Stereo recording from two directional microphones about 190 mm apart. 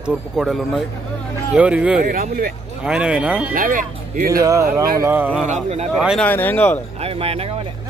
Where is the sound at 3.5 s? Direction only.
45° right (ahead or behind).